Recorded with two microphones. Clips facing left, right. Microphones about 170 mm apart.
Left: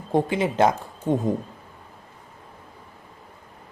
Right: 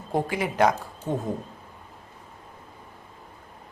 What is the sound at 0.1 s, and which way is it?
Speech, 25° left (ahead or behind).